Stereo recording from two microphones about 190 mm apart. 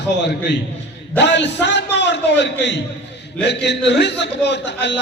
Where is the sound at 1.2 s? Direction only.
65° left (ahead or behind).